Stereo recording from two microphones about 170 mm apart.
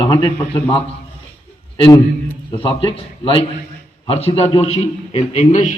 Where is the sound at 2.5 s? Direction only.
30° left (ahead or behind); by 5.8 s 45° left (ahead or behind).